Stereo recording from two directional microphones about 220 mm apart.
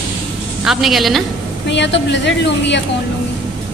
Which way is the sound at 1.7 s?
55° left (ahead or behind).